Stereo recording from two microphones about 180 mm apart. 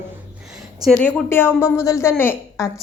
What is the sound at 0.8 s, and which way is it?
A woman's voice, 5° left (ahead or behind).